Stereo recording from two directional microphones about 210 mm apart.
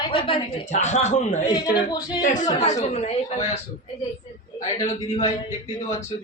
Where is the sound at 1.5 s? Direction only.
20° left (ahead or behind).